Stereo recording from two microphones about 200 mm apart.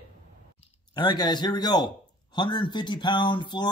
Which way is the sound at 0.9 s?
20° left (ahead or behind).